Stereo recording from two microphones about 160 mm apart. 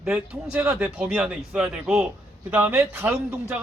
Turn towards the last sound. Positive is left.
turn(degrees=-10)  # may be behind; listen again after turning